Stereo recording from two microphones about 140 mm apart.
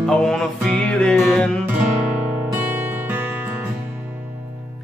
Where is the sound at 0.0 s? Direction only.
5° left (ahead or behind).